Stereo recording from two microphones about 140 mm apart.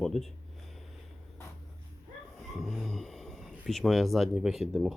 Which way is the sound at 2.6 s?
Centre (ahead or behind).